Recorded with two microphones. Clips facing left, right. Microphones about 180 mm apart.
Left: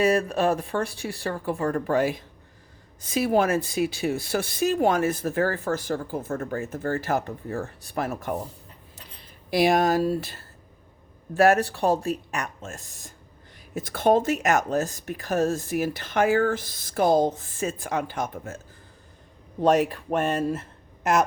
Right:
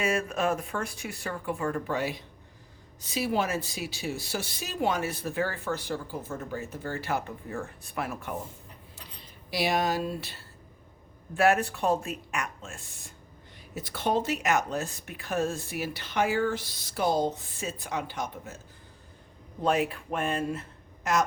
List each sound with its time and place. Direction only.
0.0 s speech: 35° left (ahead or behind)
9.5 s speech: 50° left (ahead or behind)
19.6 s speech: 40° left (ahead or behind)
21.0 s speech: 55° left (ahead or behind)